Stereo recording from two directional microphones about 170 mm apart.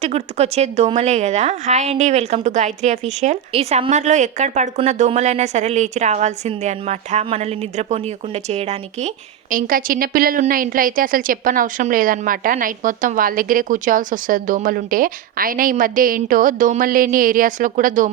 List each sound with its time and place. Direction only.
0.0 s a woman's voice: 40° right (ahead or behind)